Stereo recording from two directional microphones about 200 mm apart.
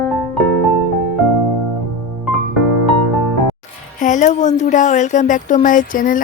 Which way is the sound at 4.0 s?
40° left (ahead or behind).